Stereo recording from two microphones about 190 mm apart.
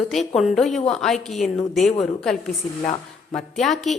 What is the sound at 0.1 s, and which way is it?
A woman's voice, centre (ahead or behind).